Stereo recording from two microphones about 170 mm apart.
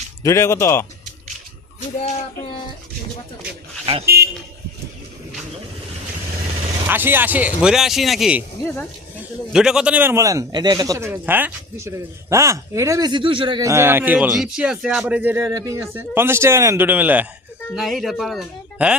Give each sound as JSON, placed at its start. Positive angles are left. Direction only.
{"t": 0.2, "sound": "speech", "side_deg": 15}
{"t": 2.0, "sound": "child singing", "side_deg": 40}
{"t": 4.0, "sound": "speech", "side_deg": -65}
{"t": 6.8, "sound": "a man's voice", "side_deg": -10}
{"t": 8.6, "sound": "speech", "side_deg": 10}
{"t": 9.5, "sound": "a man's voice", "side_deg": -5}